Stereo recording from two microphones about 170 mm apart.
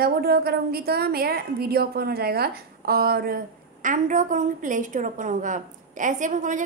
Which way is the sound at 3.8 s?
50° right (ahead or behind).